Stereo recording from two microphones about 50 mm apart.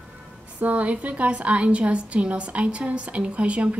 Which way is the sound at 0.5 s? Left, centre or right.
Right.